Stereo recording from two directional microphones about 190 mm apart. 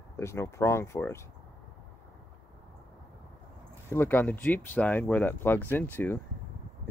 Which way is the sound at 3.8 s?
10° left (ahead or behind).